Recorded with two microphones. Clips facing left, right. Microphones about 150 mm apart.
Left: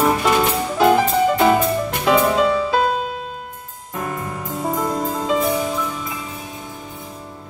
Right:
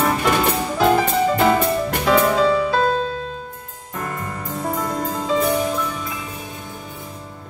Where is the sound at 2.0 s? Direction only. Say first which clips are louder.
Even; 10° left (ahead or behind).